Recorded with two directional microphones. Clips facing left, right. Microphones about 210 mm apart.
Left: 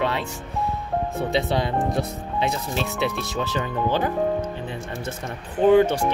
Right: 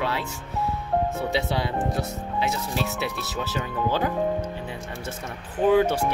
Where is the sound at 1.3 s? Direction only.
10° right (ahead or behind).